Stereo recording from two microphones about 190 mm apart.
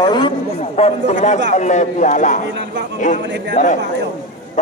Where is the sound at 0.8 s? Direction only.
35° left (ahead or behind).